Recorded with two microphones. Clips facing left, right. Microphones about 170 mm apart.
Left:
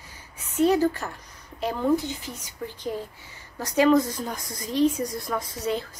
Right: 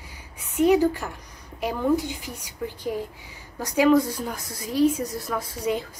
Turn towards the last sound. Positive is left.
turn(degrees=-10)  # may be behind; listen again after turning